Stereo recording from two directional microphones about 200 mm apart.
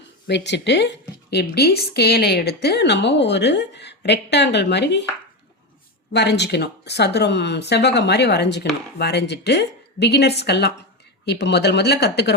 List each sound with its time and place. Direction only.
0.3 s a woman's voice: 60° left (ahead or behind)
6.1 s a woman's voice: 60° left (ahead or behind)